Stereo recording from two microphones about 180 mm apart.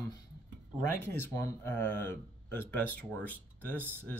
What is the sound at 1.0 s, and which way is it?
Speech, 15° left (ahead or behind).